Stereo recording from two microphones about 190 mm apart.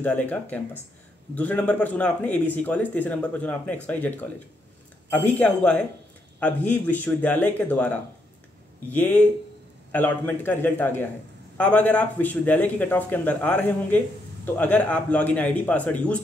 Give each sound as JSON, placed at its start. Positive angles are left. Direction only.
{"t": 0.0, "sound": "speech", "side_deg": 10}